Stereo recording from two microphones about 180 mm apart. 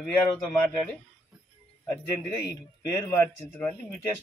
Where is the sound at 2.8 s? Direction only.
20° left (ahead or behind).